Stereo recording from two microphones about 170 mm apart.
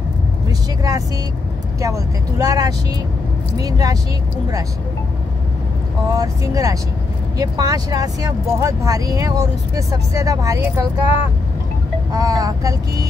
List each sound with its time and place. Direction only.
0.5 s speech: 20° right (ahead or behind)
6.0 s speech: 20° right (ahead or behind)
12.1 s speech: 20° right (ahead or behind)